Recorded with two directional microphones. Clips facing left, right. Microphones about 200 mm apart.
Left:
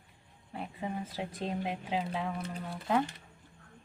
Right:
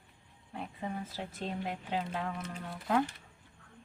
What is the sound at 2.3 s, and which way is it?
Speech, 35° left (ahead or behind).